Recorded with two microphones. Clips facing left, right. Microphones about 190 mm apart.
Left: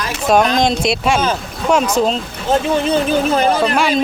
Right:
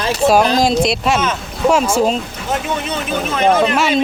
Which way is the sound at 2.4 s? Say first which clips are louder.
Left 8 dB; 30° left (ahead or behind).